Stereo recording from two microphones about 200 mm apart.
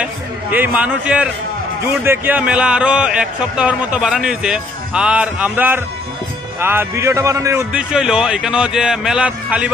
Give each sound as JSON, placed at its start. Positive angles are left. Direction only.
{"t": 0.0, "sound": "a man's voice", "side_deg": -10}
{"t": 7.9, "sound": "a man's voice", "side_deg": -5}